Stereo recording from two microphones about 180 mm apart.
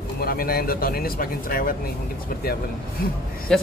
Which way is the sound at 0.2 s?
55° left (ahead or behind).